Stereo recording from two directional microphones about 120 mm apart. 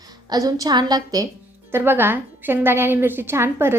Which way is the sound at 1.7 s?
15° right (ahead or behind).